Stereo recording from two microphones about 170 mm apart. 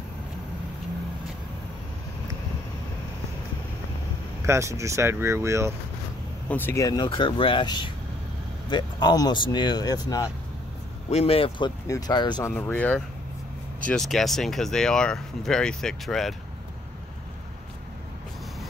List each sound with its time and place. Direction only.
4.5 s speech: 15° right (ahead or behind)
6.5 s speech: 15° left (ahead or behind)
11.1 s speech: 35° left (ahead or behind)
12.5 s speech: 10° left (ahead or behind)